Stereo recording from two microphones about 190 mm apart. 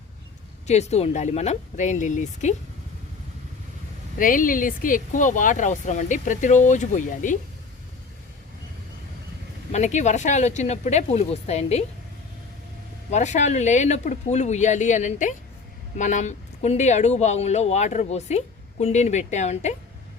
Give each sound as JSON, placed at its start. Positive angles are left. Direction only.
{"t": 0.7, "sound": "speech", "side_deg": 35}
{"t": 4.2, "sound": "speech", "side_deg": 45}
{"t": 9.7, "sound": "speech", "side_deg": 40}
{"t": 13.1, "sound": "speech", "side_deg": 40}